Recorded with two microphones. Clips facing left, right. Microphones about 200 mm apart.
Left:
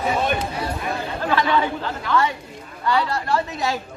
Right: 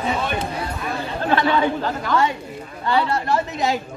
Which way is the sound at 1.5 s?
40° right (ahead or behind).